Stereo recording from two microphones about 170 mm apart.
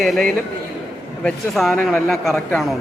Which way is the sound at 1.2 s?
Centre (ahead or behind).